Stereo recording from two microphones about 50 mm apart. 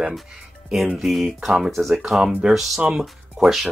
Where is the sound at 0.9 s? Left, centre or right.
Centre.